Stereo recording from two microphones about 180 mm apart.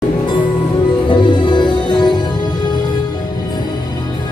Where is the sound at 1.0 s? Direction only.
25° left (ahead or behind).